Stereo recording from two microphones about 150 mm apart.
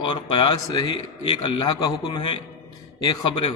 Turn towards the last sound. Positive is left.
turn(degrees=35)  # may be behind; listen again after turning